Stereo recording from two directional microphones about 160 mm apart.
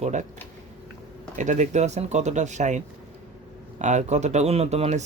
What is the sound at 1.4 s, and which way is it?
Speech, 50° right (ahead or behind).